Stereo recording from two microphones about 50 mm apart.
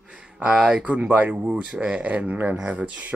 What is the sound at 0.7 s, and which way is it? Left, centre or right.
Speech, right.